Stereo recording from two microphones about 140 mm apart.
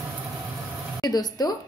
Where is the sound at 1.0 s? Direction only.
30° left (ahead or behind).